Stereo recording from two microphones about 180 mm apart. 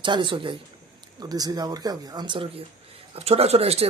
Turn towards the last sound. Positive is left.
turn(degrees=-35)  # may be behind; listen again after turning